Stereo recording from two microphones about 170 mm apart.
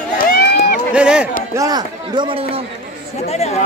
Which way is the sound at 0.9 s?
5° right (ahead or behind).